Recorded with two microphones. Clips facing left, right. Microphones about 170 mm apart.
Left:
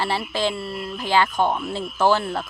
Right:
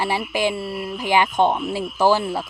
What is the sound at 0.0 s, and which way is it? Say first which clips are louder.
Speech: right 2 dB; 15° right (ahead or behind).